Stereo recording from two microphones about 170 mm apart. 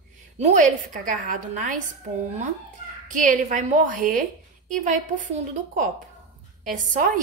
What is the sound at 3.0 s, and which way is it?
A woman's voice, 50° right (ahead or behind).